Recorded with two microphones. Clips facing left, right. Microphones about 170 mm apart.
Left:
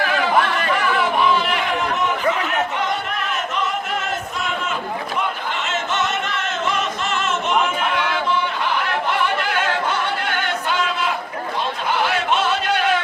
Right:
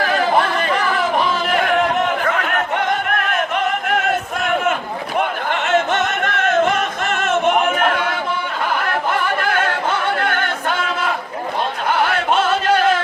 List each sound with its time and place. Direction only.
0.0 s chatter: 40° right (ahead or behind); by 2.0 s 55° right (ahead or behind)
2.3 s music: 55° right (ahead or behind)
8.7 s chatter: 50° right (ahead or behind)
10.2 s a sound: 50° right (ahead or behind)